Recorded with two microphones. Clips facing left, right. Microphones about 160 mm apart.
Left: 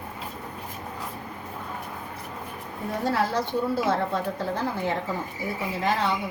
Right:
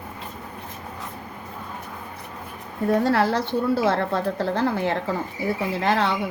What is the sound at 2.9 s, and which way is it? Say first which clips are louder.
A woman's voice: right 6 dB; 75° right (ahead or behind).